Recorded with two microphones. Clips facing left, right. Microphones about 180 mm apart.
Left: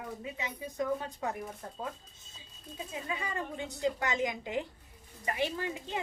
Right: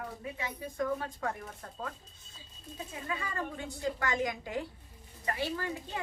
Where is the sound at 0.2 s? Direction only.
20° left (ahead or behind).